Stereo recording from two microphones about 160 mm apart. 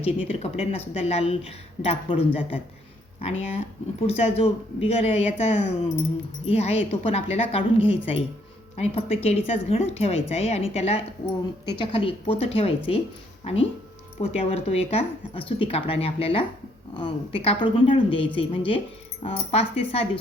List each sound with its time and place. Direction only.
0.0 s speech: 40° left (ahead or behind)